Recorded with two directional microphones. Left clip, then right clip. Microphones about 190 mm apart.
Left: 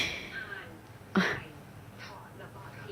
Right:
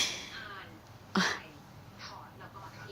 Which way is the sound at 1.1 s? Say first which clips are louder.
Left 1 dB; centre (ahead or behind).